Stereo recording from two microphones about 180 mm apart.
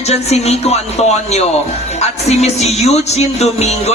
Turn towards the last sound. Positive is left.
turn(degrees=35)  # may be behind; listen again after turning